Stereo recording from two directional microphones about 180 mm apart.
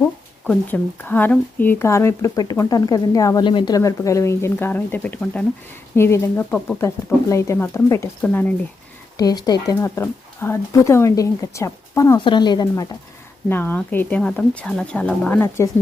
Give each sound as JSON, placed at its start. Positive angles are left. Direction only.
{"t": 0.0, "sound": "speech", "side_deg": 10}
{"t": 9.1, "sound": "speech", "side_deg": 20}
{"t": 13.5, "sound": "speech", "side_deg": 10}